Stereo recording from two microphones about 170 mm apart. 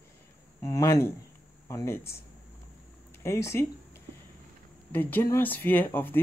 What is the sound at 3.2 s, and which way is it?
Speech, 15° left (ahead or behind).